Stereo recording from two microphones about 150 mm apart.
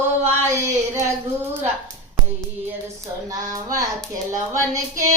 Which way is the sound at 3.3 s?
25° right (ahead or behind).